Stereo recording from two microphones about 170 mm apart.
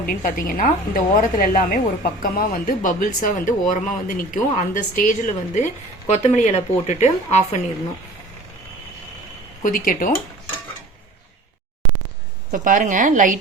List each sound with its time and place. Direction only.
0.0 s speech: 60° left (ahead or behind); by 7.4 s 40° left (ahead or behind)
9.6 s speech: 55° left (ahead or behind)
12.5 s a woman's voice: 50° right (ahead or behind)